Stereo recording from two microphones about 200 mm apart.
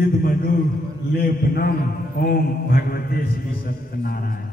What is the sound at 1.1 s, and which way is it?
A man's voice, 50° left (ahead or behind).